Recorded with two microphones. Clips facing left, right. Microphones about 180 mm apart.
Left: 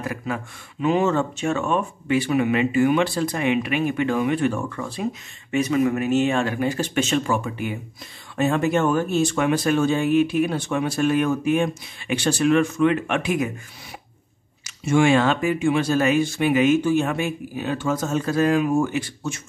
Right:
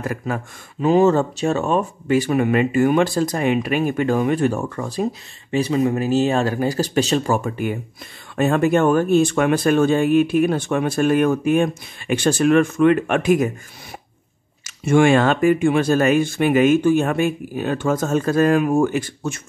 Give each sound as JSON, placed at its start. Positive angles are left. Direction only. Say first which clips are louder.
{"t": 0.0, "sound": "speech", "louder": "right 3 dB", "side_deg": -45}
{"t": 14.6, "sound": "speech", "louder": "right 4 dB", "side_deg": -55}